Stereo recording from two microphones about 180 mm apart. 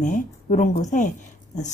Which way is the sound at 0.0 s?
45° left (ahead or behind).